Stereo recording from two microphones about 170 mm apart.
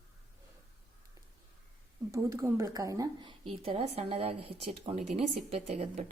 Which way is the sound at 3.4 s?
35° right (ahead or behind).